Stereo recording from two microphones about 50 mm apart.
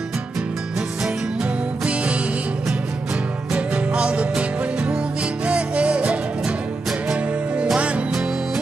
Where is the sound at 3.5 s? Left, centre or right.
Right.